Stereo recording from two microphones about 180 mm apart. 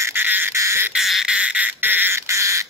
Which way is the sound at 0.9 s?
Centre (ahead or behind).